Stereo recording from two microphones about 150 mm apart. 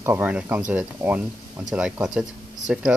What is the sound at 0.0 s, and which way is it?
Speech, 20° right (ahead or behind).